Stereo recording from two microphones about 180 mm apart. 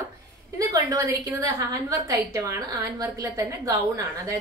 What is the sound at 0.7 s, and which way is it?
A woman's voice, 20° right (ahead or behind).